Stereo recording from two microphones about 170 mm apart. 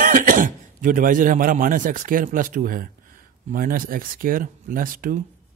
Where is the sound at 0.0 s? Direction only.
50° right (ahead or behind).